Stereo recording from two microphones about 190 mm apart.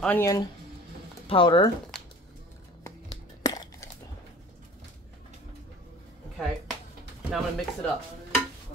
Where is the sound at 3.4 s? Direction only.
20° left (ahead or behind).